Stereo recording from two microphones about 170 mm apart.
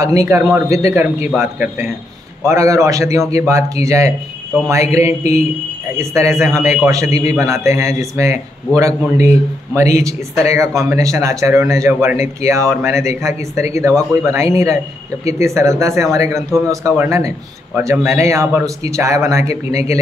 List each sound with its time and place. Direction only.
0.0 s speech: 20° right (ahead or behind)
5.9 s a man's voice: 15° right (ahead or behind)